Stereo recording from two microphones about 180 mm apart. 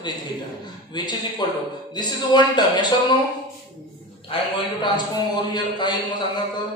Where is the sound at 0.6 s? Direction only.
25° left (ahead or behind).